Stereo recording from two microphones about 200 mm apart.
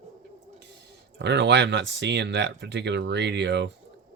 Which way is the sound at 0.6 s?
60° right (ahead or behind).